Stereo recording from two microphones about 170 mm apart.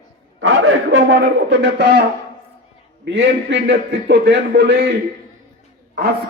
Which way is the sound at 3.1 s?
90° right.